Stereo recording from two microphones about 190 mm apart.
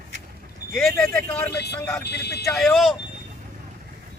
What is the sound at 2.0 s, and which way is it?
Speech, 60° left (ahead or behind).